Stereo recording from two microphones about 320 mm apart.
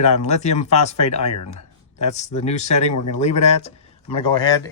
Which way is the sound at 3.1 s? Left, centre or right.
Left.